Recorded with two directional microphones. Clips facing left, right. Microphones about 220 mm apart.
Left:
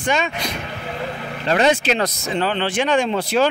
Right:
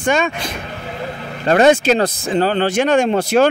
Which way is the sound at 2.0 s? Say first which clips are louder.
Right 5 dB; 35° right (ahead or behind).